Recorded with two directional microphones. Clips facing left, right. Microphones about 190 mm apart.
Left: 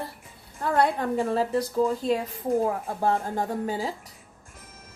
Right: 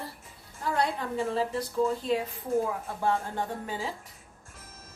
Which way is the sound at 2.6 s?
45° left (ahead or behind).